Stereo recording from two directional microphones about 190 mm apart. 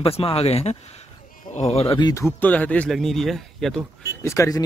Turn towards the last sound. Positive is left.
turn(degrees=15)  # may be behind; listen again after turning